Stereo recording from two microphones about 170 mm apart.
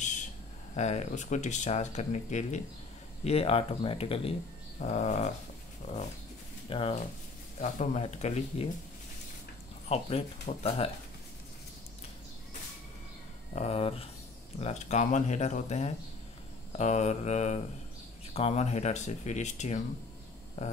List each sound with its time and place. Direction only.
0.7 s speech: 45° left (ahead or behind)
7.6 s speech: 45° left (ahead or behind)
9.8 s speech: 35° left (ahead or behind)
13.6 s speech: 35° left (ahead or behind)